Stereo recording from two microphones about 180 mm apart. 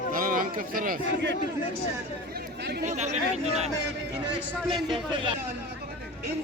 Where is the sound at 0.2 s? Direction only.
50° right (ahead or behind).